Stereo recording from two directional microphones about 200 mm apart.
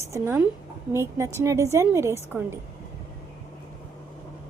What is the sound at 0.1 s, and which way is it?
A woman's voice, 15° right (ahead or behind).